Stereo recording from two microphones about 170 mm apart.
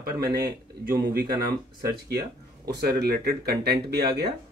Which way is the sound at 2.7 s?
70° right (ahead or behind).